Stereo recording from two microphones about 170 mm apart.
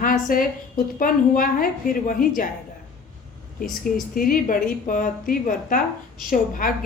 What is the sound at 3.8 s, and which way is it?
A woman's voice, 55° left (ahead or behind).